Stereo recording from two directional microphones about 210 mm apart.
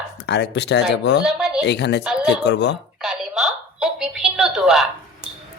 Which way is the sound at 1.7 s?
55° left (ahead or behind).